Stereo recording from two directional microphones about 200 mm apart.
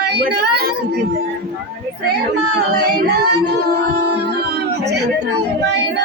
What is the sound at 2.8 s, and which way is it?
Music, 55° right (ahead or behind).